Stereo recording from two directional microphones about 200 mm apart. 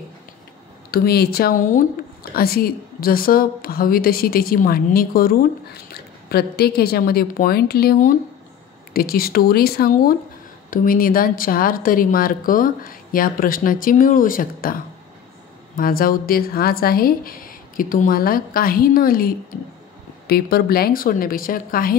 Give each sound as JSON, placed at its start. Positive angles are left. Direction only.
{"t": 0.9, "sound": "a woman's voice", "side_deg": 50}